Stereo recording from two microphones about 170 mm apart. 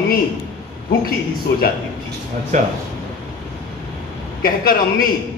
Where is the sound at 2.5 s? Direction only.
45° right (ahead or behind).